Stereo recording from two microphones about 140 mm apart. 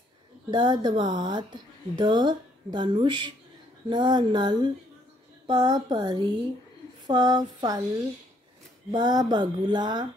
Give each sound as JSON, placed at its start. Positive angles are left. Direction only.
{"t": 0.5, "sound": "speech", "side_deg": -35}
{"t": 8.9, "sound": "speech", "side_deg": -30}